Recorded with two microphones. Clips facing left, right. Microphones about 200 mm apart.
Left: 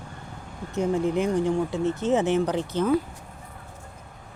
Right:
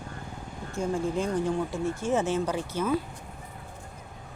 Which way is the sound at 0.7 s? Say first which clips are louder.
Left 5 dB; 20° left (ahead or behind).